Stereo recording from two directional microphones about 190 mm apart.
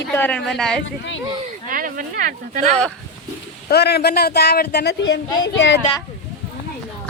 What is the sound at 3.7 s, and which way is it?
Speech, 60° left (ahead or behind).